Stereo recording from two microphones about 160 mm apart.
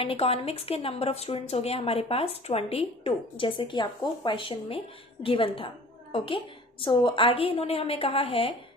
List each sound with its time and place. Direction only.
0.0 s a woman's voice: 35° left (ahead or behind)